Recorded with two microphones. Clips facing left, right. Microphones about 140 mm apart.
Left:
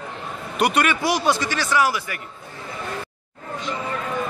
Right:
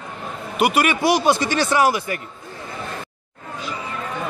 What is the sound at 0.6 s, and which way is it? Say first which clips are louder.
A man's voice: right 2 dB; 5° right (ahead or behind).